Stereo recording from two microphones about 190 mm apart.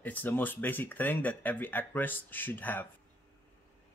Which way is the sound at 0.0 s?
10° left (ahead or behind).